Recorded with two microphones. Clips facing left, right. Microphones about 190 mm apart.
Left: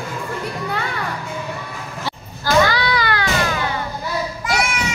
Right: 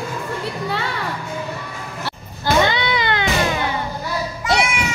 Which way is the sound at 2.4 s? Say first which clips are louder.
Left 1 dB; 25° right (ahead or behind).